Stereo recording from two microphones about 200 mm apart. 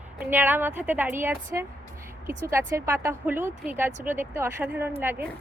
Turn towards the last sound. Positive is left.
turn(degrees=-10)  # may be behind; listen again after turning